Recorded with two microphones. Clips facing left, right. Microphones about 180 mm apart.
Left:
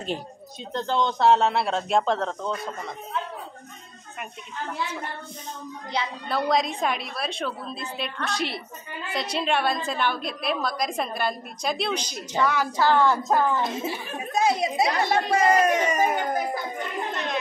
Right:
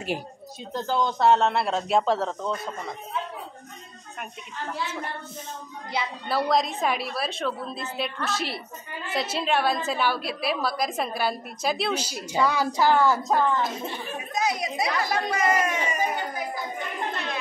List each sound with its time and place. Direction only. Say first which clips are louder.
0.7 s a woman's voice: left 1 dB; 5° right (ahead or behind)
5.9 s a woman's voice: even; 5° right (ahead or behind)
14.3 s speech: left 5 dB; 30° left (ahead or behind)
17.1 s a sound: left 3 dB; 20° left (ahead or behind)